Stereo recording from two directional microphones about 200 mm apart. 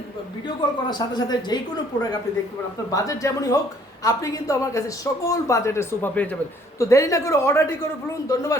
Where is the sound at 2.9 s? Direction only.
15° left (ahead or behind).